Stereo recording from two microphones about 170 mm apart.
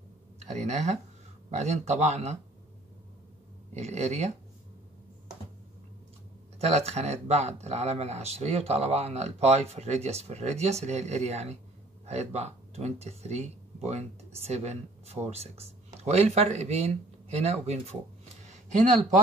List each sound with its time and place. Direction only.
0.4 s speech: 40° right (ahead or behind)
3.7 s speech: 40° right (ahead or behind)
6.6 s speech: 35° right (ahead or behind)
18.4 s a sound: 45° right (ahead or behind)